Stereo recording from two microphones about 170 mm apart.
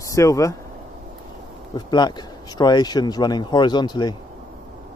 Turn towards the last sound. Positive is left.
turn(degrees=25)  # may be behind; listen again after turning